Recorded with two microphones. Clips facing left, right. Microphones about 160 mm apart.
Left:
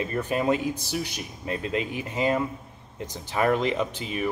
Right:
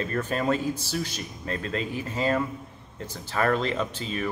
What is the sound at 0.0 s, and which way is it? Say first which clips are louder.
Speech: left 1 dB; 15° left (ahead or behind).